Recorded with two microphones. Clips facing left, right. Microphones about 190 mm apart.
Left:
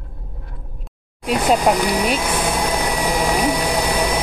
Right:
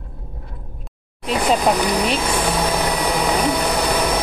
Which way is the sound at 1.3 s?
10° left (ahead or behind).